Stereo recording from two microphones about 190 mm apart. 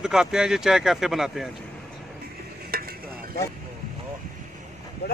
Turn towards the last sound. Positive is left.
turn(degrees=55)  # may be behind; listen again after turning